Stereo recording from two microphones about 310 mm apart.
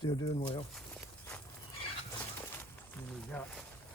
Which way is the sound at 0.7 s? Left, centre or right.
Centre.